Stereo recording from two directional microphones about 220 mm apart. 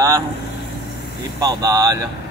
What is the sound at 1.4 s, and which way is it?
Speech, 15° right (ahead or behind).